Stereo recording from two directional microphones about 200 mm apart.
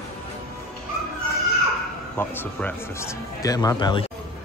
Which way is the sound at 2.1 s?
10° left (ahead or behind).